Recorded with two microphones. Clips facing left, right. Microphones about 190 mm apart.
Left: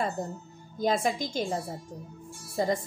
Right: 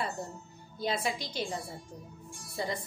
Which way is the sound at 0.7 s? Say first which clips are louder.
Left 6 dB; 45° left (ahead or behind).